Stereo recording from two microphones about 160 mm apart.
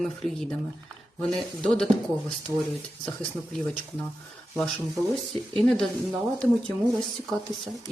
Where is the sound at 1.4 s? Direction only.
5° left (ahead or behind).